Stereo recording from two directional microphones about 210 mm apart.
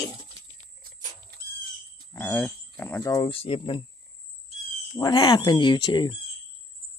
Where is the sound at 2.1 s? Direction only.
10° left (ahead or behind).